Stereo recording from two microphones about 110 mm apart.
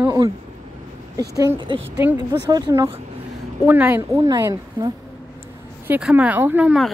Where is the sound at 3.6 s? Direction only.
15° right (ahead or behind).